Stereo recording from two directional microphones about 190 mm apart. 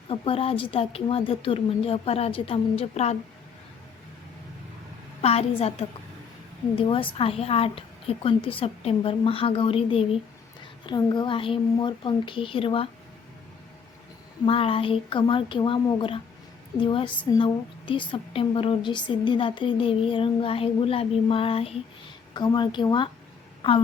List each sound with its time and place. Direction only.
0.1 s speech: 30° left (ahead or behind)
5.2 s speech: 35° left (ahead or behind)
6.7 s a woman's voice: 30° left (ahead or behind)
14.4 s a woman's voice: 30° left (ahead or behind)